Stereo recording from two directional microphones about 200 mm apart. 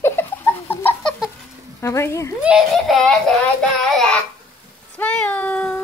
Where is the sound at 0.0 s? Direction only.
10° left (ahead or behind).